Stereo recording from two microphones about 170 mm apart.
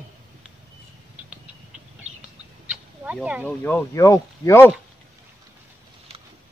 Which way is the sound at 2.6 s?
5° right (ahead or behind).